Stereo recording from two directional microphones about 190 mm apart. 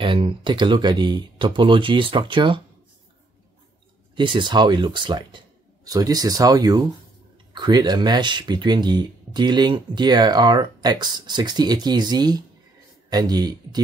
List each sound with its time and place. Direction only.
0.0 s speech: 25° right (ahead or behind)
4.1 s speech: 25° right (ahead or behind)